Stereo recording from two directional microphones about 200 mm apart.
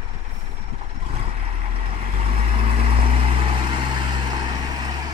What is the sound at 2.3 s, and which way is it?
Vehicle, 30° right (ahead or behind).